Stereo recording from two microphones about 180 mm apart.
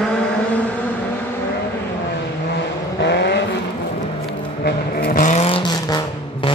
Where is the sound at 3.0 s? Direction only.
70° left (ahead or behind).